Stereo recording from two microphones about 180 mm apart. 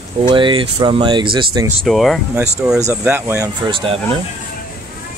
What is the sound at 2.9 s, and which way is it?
Speech, 10° right (ahead or behind).